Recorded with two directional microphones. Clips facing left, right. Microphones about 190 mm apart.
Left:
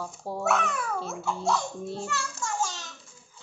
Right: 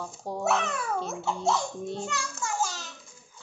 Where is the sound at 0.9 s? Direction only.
Centre (ahead or behind).